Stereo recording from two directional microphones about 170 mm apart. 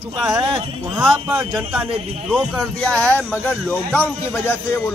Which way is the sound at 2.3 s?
5° right (ahead or behind).